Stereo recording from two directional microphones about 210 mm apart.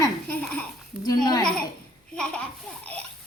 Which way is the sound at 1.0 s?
20° left (ahead or behind).